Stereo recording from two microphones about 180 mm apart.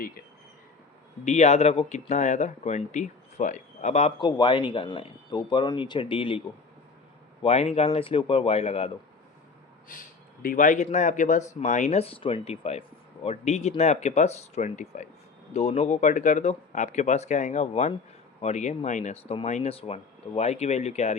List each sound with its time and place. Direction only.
1.2 s speech: 40° left (ahead or behind)
4.3 s speech: 25° left (ahead or behind)
7.4 s speech: 35° left (ahead or behind)
10.4 s a man's voice: 50° left (ahead or behind)